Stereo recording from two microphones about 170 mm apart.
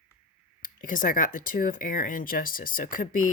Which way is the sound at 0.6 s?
55° left (ahead or behind).